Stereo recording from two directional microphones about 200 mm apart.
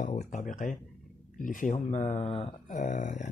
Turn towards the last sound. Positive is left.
turn(degrees=40)  # may be behind; listen again after turning